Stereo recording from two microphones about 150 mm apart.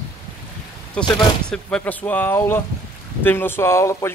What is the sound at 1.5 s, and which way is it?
Speech, 5° left (ahead or behind).